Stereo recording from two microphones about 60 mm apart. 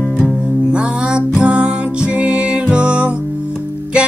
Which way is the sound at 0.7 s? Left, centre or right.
Centre.